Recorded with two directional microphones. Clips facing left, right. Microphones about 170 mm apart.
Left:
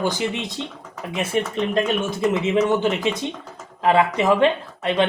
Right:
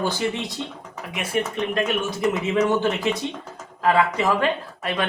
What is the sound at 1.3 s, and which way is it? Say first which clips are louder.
Speech: left 1 dB; 30° left (ahead or behind).